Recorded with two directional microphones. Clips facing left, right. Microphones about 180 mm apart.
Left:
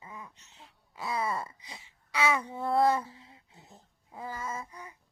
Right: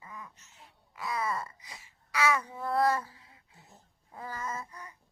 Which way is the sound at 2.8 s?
20° left (ahead or behind).